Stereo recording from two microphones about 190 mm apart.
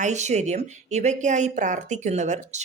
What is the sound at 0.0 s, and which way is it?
Speech, 35° right (ahead or behind).